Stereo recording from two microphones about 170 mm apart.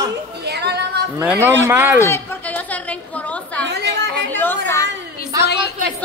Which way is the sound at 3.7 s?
85° right.